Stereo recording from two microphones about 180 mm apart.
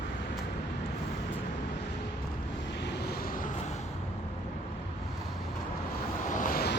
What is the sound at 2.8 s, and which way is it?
Vehicle, 65° left (ahead or behind).